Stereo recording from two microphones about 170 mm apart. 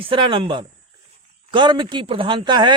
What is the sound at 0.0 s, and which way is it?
A man's voice, 30° right (ahead or behind).